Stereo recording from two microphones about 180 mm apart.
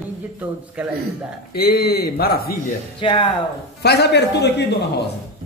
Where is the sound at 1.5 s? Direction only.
60° left (ahead or behind).